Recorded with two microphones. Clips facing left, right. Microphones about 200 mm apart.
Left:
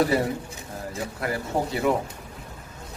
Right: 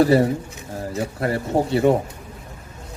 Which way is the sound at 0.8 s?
30° right (ahead or behind).